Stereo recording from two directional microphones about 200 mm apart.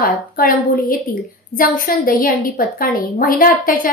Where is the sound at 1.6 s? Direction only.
45° left (ahead or behind).